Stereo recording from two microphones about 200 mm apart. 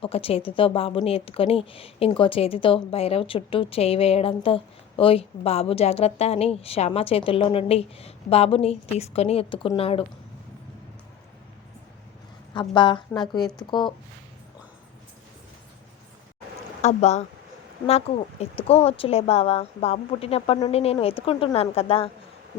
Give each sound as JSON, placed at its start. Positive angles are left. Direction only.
{"t": 0.0, "sound": "a woman's voice", "side_deg": 30}
{"t": 12.5, "sound": "a woman's voice", "side_deg": 25}
{"t": 16.8, "sound": "a woman's voice", "side_deg": 35}